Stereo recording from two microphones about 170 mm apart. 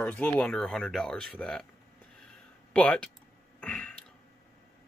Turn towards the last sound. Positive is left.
turn(degrees=5)  # may be behind; listen again after turning